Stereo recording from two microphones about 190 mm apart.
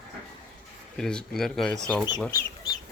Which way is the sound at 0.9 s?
5° left (ahead or behind).